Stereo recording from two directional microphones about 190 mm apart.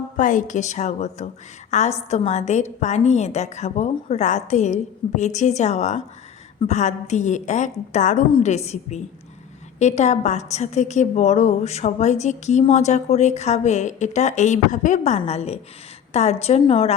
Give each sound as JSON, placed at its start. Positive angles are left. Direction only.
{"t": 0.2, "sound": "a woman's voice", "side_deg": 40}